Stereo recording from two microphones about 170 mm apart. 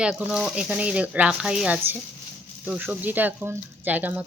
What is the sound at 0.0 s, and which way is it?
A woman's voice, 5° right (ahead or behind).